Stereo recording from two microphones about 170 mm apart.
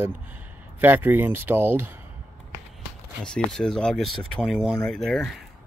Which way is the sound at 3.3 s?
5° left (ahead or behind).